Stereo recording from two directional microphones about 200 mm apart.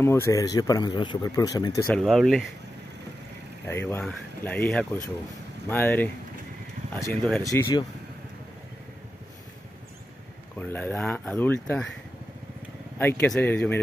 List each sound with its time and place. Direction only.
0.0 s speech: 10° left (ahead or behind)
1.9 s speech: centre (ahead or behind)
3.6 s speech: 10° left (ahead or behind)
10.6 s speech: 10° left (ahead or behind)
13.0 s speech: 10° left (ahead or behind)